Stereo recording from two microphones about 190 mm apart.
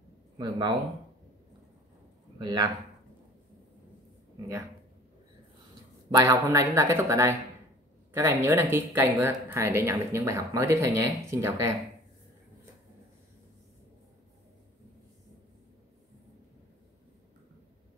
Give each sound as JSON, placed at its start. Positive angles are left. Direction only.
{"t": 0.4, "sound": "speech", "side_deg": -20}
{"t": 2.3, "sound": "speech", "side_deg": -20}
{"t": 6.0, "sound": "speech", "side_deg": -20}